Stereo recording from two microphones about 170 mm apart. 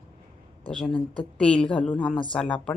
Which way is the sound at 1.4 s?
5° left (ahead or behind).